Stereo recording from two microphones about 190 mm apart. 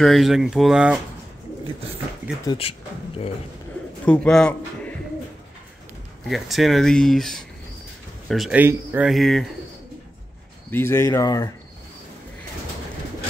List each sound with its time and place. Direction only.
0.0 s speech: centre (ahead or behind)
2.4 s speech: 30° left (ahead or behind)
4.0 s a man's voice: 5° left (ahead or behind)
6.2 s speech: centre (ahead or behind)
10.7 s speech: 15° left (ahead or behind)